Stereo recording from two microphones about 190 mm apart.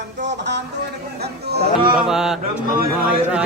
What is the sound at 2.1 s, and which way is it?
Speech, centre (ahead or behind).